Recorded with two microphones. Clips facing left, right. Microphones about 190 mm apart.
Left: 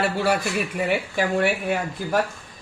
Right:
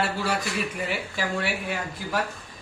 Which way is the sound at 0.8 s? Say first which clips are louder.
Left 6 dB; 55° left (ahead or behind).